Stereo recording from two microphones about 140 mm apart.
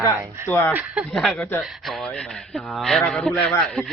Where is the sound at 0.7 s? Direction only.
10° right (ahead or behind).